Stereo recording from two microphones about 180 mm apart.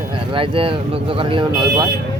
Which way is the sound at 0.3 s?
30° right (ahead or behind).